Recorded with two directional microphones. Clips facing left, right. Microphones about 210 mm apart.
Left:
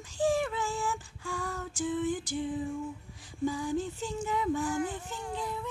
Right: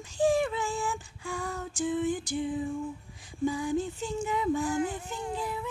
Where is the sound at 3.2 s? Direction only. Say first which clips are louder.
Right 2 dB; 15° right (ahead or behind).